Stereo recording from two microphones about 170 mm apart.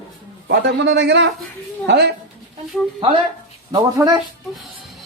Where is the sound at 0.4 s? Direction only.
85° right.